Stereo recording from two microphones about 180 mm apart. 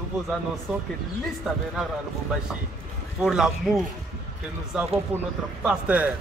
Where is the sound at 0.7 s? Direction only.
5° right (ahead or behind).